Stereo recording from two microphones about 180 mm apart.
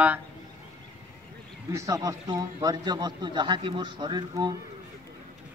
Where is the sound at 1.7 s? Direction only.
20° right (ahead or behind).